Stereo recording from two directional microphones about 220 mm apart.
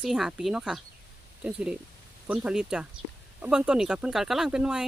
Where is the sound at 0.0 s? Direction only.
Centre (ahead or behind).